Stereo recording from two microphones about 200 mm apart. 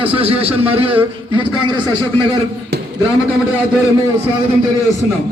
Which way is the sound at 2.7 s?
55° right (ahead or behind).